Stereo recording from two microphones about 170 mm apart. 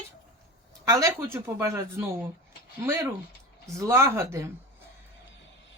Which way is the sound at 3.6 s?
15° right (ahead or behind).